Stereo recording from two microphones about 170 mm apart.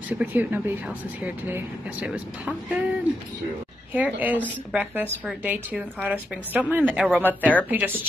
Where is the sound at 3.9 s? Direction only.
10° right (ahead or behind).